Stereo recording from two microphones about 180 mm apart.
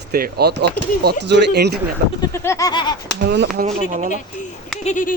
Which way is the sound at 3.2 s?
60° right (ahead or behind).